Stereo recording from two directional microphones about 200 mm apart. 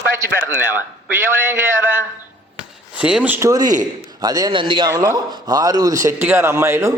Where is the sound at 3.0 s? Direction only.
5° right (ahead or behind).